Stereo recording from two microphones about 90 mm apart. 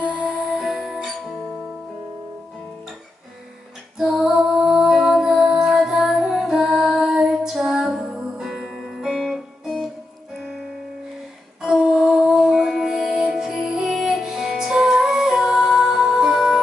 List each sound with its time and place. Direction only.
0.6 s music: centre (ahead or behind)
4.2 s music: 5° right (ahead or behind)
10.3 s keyboard: 5° left (ahead or behind)
11.6 s music: 5° right (ahead or behind)